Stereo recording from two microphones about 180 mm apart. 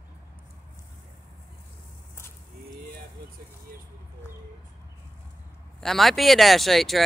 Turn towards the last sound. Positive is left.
turn(degrees=0)  # may be behind; listen again after turning